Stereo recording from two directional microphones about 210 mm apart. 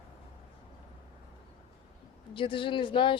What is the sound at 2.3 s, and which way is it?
Speech, 25° left (ahead or behind).